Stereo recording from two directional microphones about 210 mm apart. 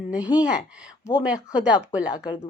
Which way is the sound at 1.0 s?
20° left (ahead or behind).